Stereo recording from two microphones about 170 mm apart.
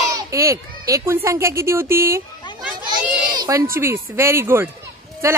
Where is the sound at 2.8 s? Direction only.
25° right (ahead or behind).